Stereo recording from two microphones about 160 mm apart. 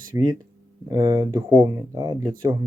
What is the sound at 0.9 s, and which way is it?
Speech, 20° right (ahead or behind).